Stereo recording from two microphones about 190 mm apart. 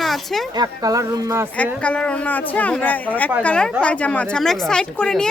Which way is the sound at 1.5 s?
5° left (ahead or behind).